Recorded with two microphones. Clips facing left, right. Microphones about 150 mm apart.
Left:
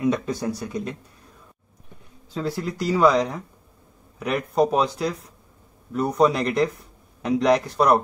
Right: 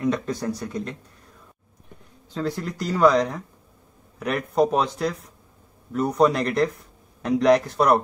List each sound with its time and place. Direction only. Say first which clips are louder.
0.0 s speech: left 1 dB; 5° left (ahead or behind)
2.3 s speech: even; 5° left (ahead or behind)